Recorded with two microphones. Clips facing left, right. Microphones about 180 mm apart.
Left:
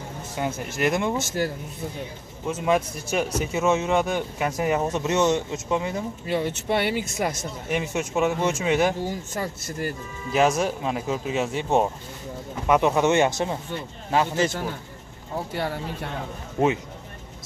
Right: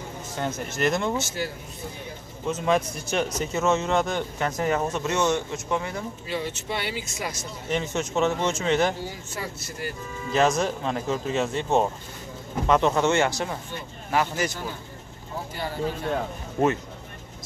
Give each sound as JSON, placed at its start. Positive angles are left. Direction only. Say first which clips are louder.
{"t": 0.4, "sound": "speech", "louder": "left 1 dB", "side_deg": 10}
{"t": 1.2, "sound": "speech", "louder": "left 5 dB", "side_deg": 50}
{"t": 2.4, "sound": "speech", "louder": "left 1 dB", "side_deg": 5}
{"t": 6.2, "sound": "speech", "louder": "left 6 dB", "side_deg": 55}
{"t": 7.6, "sound": "speech", "louder": "even", "side_deg": 10}
{"t": 9.0, "sound": "speech", "louder": "left 5 dB", "side_deg": 45}
{"t": 10.3, "sound": "speech", "louder": "left 1 dB", "side_deg": 10}
{"t": 15.5, "sound": "speech", "louder": "left 4 dB", "side_deg": 65}
{"t": 16.5, "sound": "speech", "louder": "left 1 dB", "side_deg": 10}